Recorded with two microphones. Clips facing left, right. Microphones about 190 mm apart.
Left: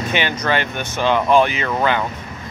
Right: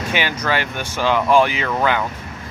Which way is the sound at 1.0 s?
20° left (ahead or behind).